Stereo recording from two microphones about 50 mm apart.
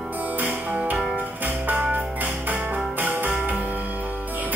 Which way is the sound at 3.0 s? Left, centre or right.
Right.